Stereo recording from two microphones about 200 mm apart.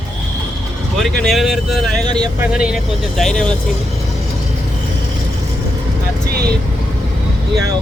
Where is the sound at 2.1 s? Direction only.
20° right (ahead or behind).